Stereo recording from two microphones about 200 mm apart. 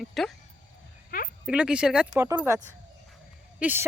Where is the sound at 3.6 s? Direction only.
10° right (ahead or behind).